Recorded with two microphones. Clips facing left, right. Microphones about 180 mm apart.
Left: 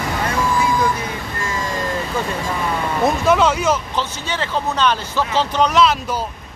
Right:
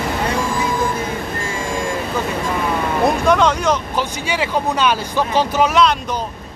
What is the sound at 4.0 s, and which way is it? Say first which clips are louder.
Speech: right 3 dB; 10° right (ahead or behind).